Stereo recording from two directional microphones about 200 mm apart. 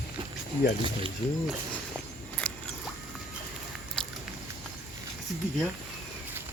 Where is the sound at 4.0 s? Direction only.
5° left (ahead or behind).